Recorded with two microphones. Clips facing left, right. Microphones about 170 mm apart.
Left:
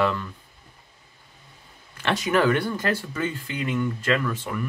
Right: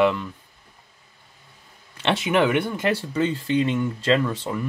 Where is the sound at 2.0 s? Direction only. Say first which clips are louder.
Right 2 dB; 25° right (ahead or behind).